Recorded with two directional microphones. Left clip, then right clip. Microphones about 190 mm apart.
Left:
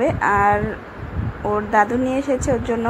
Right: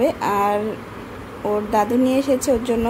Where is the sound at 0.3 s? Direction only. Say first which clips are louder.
Left 6 dB; 5° right (ahead or behind).